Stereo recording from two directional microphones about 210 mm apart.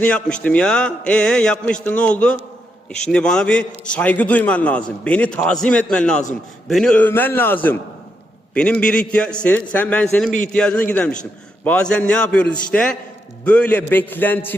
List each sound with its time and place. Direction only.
0.0 s a man's voice: 5° left (ahead or behind)